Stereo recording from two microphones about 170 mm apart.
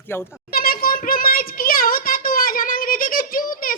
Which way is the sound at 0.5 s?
60° left (ahead or behind).